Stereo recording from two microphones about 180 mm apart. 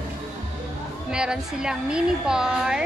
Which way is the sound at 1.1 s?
5° right (ahead or behind).